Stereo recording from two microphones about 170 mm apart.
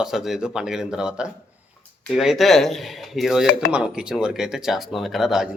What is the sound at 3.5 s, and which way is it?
Speech, 65° left (ahead or behind).